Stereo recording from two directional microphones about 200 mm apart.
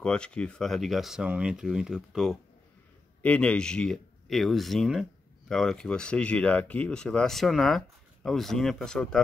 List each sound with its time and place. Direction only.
0.0 s speech: 5° left (ahead or behind)